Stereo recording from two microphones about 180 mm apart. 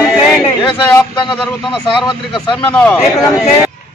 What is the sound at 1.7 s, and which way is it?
Speech, 30° left (ahead or behind).